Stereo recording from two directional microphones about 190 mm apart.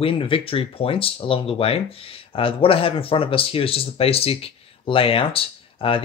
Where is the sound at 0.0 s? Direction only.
30° left (ahead or behind).